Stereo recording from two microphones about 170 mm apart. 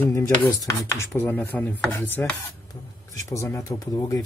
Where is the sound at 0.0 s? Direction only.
15° left (ahead or behind).